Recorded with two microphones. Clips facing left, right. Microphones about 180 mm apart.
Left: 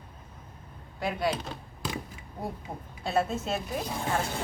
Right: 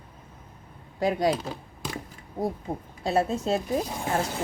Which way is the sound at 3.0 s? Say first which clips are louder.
Right 4 dB; 35° right (ahead or behind).